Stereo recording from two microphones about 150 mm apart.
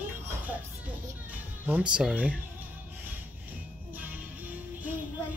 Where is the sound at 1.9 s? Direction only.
10° right (ahead or behind).